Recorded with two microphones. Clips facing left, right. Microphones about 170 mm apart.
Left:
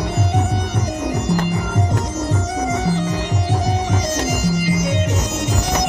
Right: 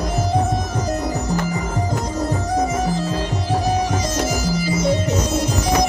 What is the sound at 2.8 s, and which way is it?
Music, 90° left.